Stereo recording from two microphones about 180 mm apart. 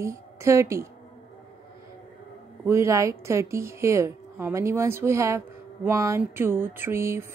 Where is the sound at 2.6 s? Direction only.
15° right (ahead or behind).